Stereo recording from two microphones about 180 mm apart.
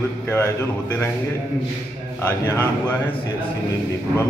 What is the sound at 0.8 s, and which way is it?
Speech, 10° left (ahead or behind).